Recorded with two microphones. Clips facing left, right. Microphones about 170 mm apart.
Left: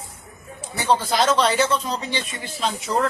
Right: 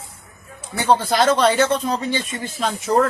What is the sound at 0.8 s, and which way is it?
Speech, 55° right (ahead or behind).